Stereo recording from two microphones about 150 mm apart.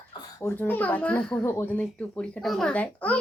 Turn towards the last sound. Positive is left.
turn(degrees=10)  # may be behind; listen again after turning